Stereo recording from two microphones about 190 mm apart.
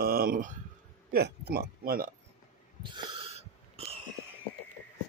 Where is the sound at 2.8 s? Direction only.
25° right (ahead or behind).